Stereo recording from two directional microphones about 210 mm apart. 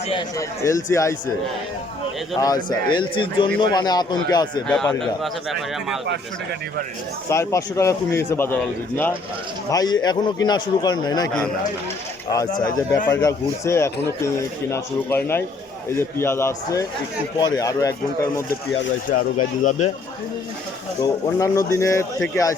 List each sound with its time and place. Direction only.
0.0 s a man's voice: 25° left (ahead or behind)
2.4 s speech: 20° left (ahead or behind)
4.7 s a man's voice: 5° left (ahead or behind)
6.1 s speech: 55° right (ahead or behind)
7.3 s a man's voice: 15° left (ahead or behind)
12.3 s a man's voice: 15° left (ahead or behind)
19.0 s speech: 40° left (ahead or behind)
21.0 s a man's voice: 15° left (ahead or behind)